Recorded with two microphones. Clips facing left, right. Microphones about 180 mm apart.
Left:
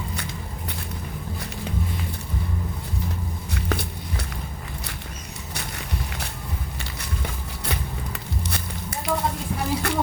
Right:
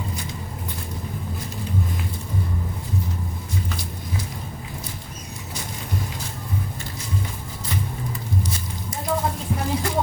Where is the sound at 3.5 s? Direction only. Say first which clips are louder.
Left 3 dB; 70° left (ahead or behind).